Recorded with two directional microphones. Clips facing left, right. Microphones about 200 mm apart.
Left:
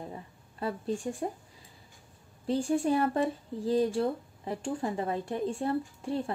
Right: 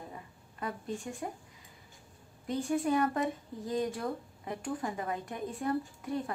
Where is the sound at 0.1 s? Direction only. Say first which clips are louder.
Left 4 dB; 30° left (ahead or behind).